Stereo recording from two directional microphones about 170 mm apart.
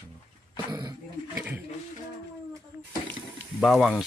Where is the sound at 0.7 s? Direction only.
25° right (ahead or behind).